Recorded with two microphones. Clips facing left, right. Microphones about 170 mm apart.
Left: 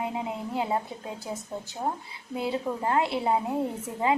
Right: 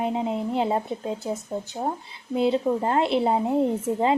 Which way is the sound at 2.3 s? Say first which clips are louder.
Right 7 dB; 25° right (ahead or behind).